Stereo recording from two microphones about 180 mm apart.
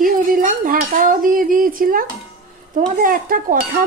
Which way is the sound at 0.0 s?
50° right (ahead or behind).